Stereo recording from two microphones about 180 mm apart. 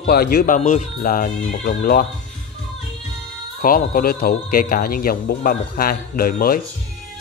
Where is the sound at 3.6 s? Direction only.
50° left (ahead or behind).